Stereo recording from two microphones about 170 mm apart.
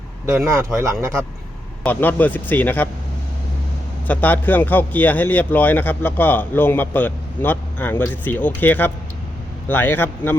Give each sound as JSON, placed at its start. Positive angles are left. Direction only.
{"t": 0.5, "sound": "speech", "side_deg": -15}
{"t": 1.8, "sound": "a man's voice", "side_deg": 10}
{"t": 4.0, "sound": "a man's voice", "side_deg": 10}